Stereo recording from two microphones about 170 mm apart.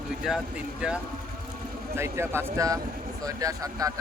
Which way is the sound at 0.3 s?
5° right (ahead or behind).